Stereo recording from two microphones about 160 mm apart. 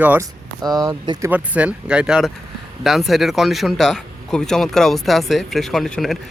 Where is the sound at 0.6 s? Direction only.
25° right (ahead or behind).